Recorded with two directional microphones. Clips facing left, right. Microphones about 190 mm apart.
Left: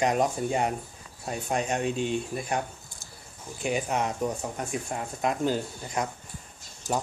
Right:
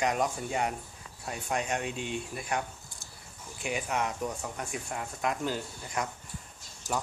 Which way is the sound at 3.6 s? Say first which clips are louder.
Left 4 dB; 30° left (ahead or behind).